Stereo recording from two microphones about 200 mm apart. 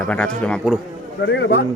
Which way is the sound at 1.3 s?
55° left (ahead or behind).